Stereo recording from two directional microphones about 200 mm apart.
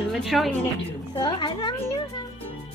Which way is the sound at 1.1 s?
25° left (ahead or behind).